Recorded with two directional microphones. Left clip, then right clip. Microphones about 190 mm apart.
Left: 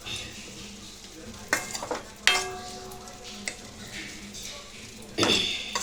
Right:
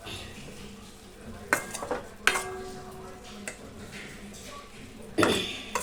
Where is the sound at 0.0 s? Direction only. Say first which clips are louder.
Left 4 dB; 15° right (ahead or behind).